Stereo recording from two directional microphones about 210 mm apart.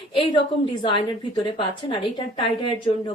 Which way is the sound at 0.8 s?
20° left (ahead or behind).